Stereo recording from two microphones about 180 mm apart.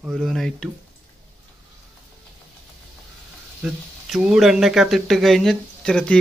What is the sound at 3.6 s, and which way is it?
Speech, 5° right (ahead or behind).